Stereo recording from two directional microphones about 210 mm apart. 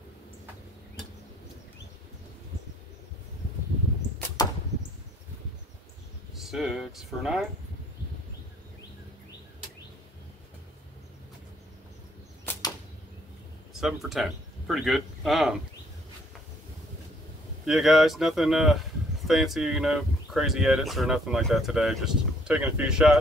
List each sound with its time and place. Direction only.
4.4 s a sound: 20° left (ahead or behind)
6.3 s speech: centre (ahead or behind)
12.5 s arrow: 10° left (ahead or behind)
13.7 s speech: centre (ahead or behind)
17.6 s speech: centre (ahead or behind)